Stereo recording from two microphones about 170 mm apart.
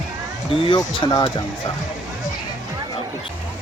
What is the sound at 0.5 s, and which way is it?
Speech, 30° left (ahead or behind).